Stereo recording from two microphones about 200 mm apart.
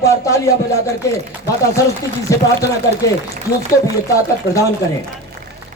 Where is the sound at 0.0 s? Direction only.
15° left (ahead or behind).